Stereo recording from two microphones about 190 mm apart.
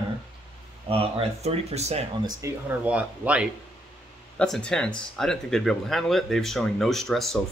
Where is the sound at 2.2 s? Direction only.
15° right (ahead or behind).